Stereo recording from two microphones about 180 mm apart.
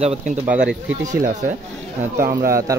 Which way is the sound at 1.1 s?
45° right (ahead or behind).